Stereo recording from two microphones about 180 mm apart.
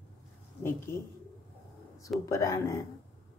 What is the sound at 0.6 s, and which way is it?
Speech, 10° left (ahead or behind).